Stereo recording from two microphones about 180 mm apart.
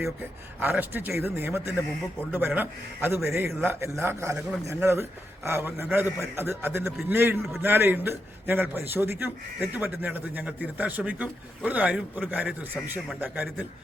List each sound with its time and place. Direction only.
0.6 s a man's voice: 10° right (ahead or behind)